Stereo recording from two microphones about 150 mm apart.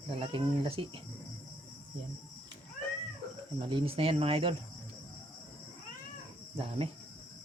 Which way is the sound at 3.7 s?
35° right (ahead or behind).